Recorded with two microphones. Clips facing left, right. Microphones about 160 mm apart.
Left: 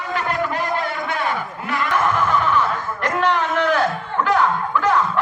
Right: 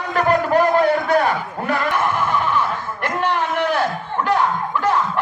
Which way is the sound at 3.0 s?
10° right (ahead or behind).